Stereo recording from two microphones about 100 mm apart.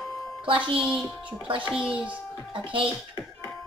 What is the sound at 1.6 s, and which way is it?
Speech, 10° right (ahead or behind).